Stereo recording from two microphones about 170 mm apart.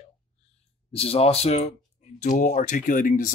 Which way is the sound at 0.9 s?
35° left (ahead or behind).